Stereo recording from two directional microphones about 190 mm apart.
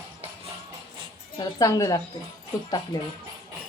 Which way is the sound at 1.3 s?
20° left (ahead or behind).